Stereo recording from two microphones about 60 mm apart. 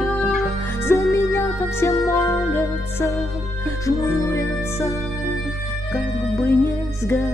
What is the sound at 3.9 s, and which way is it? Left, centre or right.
Music, left.